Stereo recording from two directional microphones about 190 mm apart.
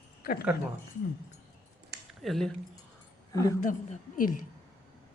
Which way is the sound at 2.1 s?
Centre (ahead or behind).